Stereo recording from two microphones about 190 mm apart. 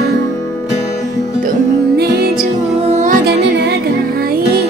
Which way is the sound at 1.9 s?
55° right (ahead or behind).